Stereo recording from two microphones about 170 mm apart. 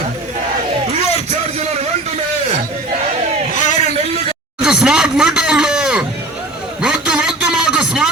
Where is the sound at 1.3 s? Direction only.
40° right (ahead or behind).